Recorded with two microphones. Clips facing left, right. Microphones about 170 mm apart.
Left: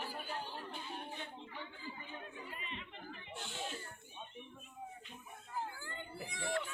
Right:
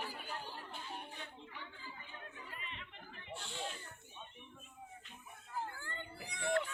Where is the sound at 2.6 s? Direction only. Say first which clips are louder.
Left 3 dB; 20° left (ahead or behind).